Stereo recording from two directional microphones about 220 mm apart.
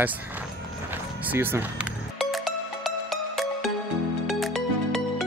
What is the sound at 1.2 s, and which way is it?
Music, 10° right (ahead or behind).